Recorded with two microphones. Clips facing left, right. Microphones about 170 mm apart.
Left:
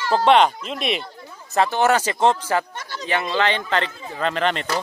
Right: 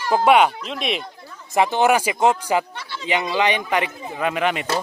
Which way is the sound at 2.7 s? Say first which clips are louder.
Even; 40° left (ahead or behind).